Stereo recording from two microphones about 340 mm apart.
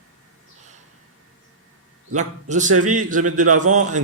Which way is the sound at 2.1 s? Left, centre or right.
Right.